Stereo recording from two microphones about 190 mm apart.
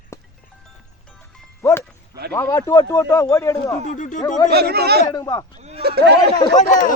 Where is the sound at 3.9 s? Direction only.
45° left (ahead or behind).